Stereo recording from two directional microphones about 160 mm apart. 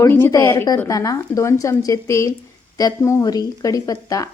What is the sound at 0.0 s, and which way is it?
Speech, 15° left (ahead or behind).